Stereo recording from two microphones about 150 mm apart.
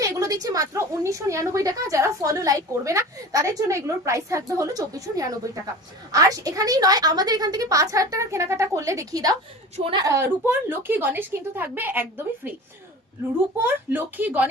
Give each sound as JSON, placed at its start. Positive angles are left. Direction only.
{"t": 0.0, "sound": "a sound", "side_deg": -25}
{"t": 0.4, "sound": "a woman's voice", "side_deg": -20}
{"t": 13.9, "sound": "a woman's voice", "side_deg": -10}